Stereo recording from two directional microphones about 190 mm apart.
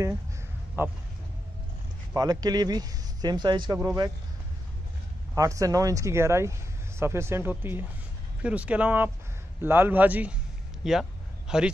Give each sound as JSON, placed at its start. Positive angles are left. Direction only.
{"t": 0.8, "sound": "speech", "side_deg": -10}
{"t": 2.1, "sound": "speech", "side_deg": -20}
{"t": 5.3, "sound": "speech", "side_deg": -15}
{"t": 10.8, "sound": "a sound", "side_deg": 0}